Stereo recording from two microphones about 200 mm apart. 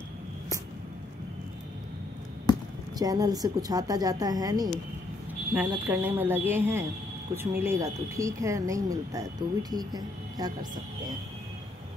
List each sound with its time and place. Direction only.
3.0 s a woman's voice: 20° right (ahead or behind)